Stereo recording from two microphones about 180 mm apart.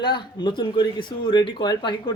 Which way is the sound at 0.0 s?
25° left (ahead or behind).